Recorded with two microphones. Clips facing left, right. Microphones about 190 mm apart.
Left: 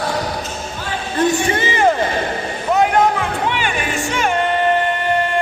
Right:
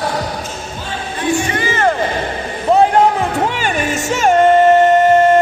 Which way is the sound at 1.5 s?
20° left (ahead or behind).